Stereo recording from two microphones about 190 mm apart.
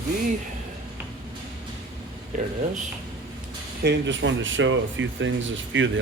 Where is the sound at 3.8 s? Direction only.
75° right (ahead or behind).